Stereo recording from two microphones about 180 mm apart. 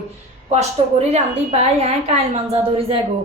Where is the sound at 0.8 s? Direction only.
35° right (ahead or behind).